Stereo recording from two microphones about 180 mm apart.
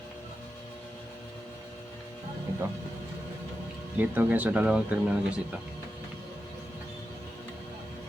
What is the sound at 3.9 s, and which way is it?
Speech, 10° right (ahead or behind).